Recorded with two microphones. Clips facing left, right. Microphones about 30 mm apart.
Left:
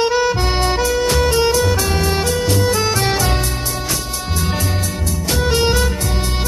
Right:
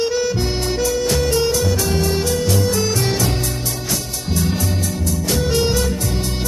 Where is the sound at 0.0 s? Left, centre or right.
Left.